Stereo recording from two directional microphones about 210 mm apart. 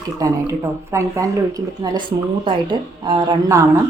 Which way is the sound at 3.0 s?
20° right (ahead or behind).